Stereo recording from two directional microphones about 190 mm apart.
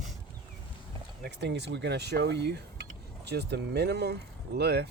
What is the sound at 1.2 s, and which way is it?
Speech, 65° right (ahead or behind).